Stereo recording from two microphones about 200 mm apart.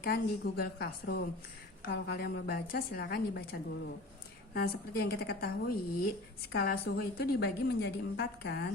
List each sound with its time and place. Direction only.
0.0 s a woman's voice: 50° left (ahead or behind)